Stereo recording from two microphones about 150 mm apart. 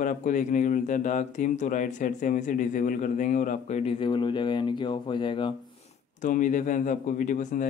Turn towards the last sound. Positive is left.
turn(degrees=60)  # may be behind; listen again after turning